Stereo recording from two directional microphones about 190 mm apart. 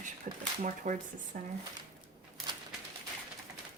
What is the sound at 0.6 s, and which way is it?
Speech, 40° right (ahead or behind).